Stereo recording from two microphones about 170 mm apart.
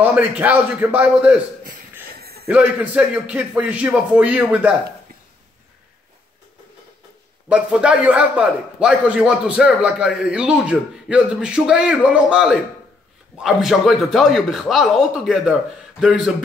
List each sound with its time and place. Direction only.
0.0 s speech: 10° right (ahead or behind)
2.1 s a sound: 65° right (ahead or behind)
2.4 s speech: 10° right (ahead or behind)
7.4 s a man's voice: 5° right (ahead or behind)